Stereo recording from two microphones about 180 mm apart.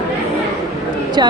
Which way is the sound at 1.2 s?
25° right (ahead or behind).